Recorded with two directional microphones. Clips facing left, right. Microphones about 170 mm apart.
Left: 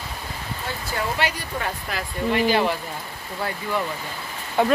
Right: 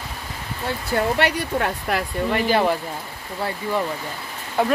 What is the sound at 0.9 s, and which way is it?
Speech, 60° right (ahead or behind).